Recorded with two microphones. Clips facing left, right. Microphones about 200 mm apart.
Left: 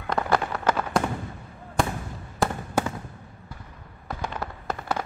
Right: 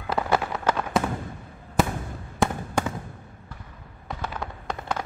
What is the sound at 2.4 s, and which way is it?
Fireworks, centre (ahead or behind).